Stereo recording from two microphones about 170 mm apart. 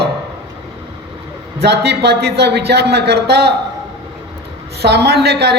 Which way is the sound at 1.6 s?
75° right (ahead or behind).